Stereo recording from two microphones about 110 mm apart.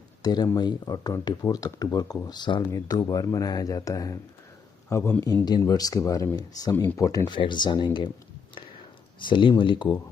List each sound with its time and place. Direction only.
0.2 s speech: 40° left (ahead or behind)
2.7 s a man's voice: 30° left (ahead or behind)
5.2 s speech: 35° left (ahead or behind)
6.8 s speech: 20° left (ahead or behind)
7.2 s speech: 45° left (ahead or behind)
9.2 s speech: 50° left (ahead or behind)